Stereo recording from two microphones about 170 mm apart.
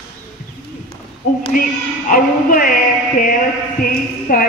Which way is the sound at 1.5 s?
55° left (ahead or behind).